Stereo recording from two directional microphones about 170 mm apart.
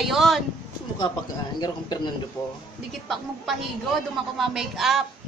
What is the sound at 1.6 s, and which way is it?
Speech, 25° left (ahead or behind).